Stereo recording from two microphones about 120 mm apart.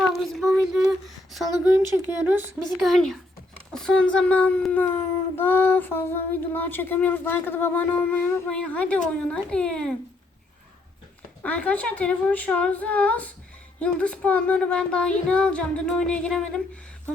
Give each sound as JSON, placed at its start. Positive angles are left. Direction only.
{"t": 0.1, "sound": "a sound", "side_deg": 0}
{"t": 2.0, "sound": "speech", "side_deg": -15}
{"t": 2.6, "sound": "speech", "side_deg": 0}
{"t": 11.4, "sound": "speech", "side_deg": 10}